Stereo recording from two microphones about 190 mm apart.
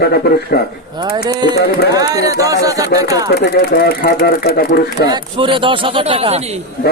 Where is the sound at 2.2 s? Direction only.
15° right (ahead or behind).